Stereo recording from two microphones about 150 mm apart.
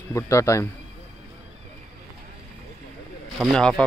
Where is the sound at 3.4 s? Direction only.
5° left (ahead or behind).